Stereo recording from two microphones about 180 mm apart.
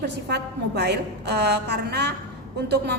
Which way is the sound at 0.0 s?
65° right (ahead or behind).